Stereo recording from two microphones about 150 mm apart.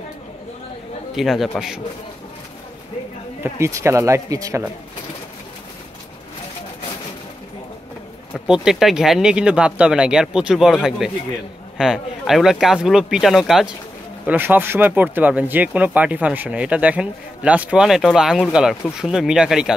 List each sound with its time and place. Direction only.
1.1 s speech: centre (ahead or behind)
3.4 s speech: 20° right (ahead or behind)
8.5 s speech: 5° right (ahead or behind)
14.2 s speech: 10° right (ahead or behind)